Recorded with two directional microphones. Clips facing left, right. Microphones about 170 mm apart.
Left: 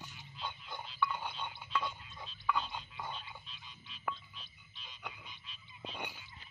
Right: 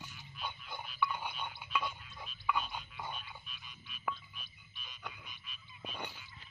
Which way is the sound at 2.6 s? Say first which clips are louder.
Even; 25° left (ahead or behind).